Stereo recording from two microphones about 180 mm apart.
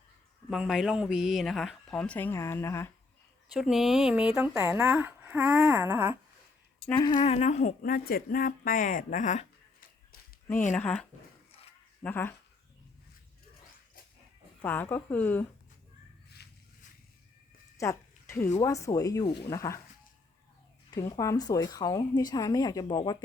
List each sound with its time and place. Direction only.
0.5 s speech: centre (ahead or behind); by 2.9 s 15° left (ahead or behind)
3.5 s speech: centre (ahead or behind)
5.9 s a sound: 10° right (ahead or behind)
6.7 s a sound: 5° left (ahead or behind)
7.1 s speech: 40° left (ahead or behind)
10.8 s speech: 5° left (ahead or behind)
12.0 s speech: 10° left (ahead or behind)
14.6 s speech: 10° left (ahead or behind)
16.4 s a sound: 65° left (ahead or behind)
17.7 s speech: 15° left (ahead or behind)
20.9 s speech: 20° left (ahead or behind)